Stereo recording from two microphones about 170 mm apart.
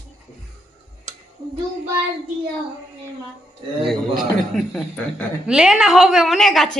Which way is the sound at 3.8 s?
Centre (ahead or behind).